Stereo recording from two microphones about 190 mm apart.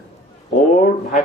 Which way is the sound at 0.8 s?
40° left (ahead or behind).